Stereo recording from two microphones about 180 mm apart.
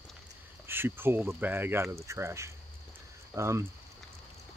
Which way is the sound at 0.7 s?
10° right (ahead or behind).